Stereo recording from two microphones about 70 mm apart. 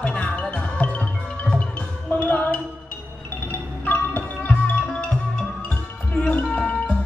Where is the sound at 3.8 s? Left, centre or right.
Left.